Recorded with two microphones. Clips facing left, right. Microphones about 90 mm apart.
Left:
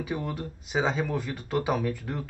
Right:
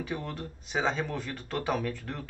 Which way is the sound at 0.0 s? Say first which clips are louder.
Left 3 dB; 5° left (ahead or behind).